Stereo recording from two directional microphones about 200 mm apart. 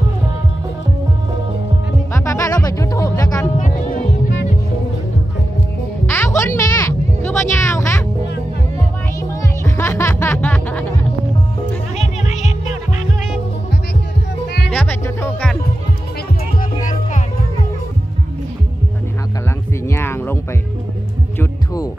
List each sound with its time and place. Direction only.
2.1 s music: 15° left (ahead or behind)
3.5 s music: 40° left (ahead or behind)
6.0 s music: 10° left (ahead or behind)
9.3 s music: 15° left (ahead or behind)
12.0 s music: 35° left (ahead or behind)
14.7 s music: 10° left (ahead or behind)
19.9 s heart sounds: 10° left (ahead or behind)
21.4 s music: 15° left (ahead or behind)